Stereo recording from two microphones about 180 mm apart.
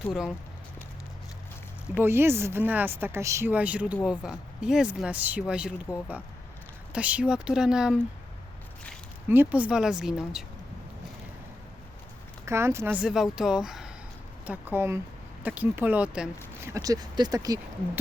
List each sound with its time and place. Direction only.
0.1 s speech: 5° right (ahead or behind)
2.0 s speech: 15° right (ahead or behind)
6.9 s speech: 5° right (ahead or behind)
9.3 s speech: 10° right (ahead or behind)
12.5 s speech: 15° right (ahead or behind)
16.6 s speech: 20° right (ahead or behind)